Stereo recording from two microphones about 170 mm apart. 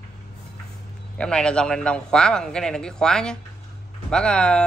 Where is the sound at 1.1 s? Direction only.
5° left (ahead or behind).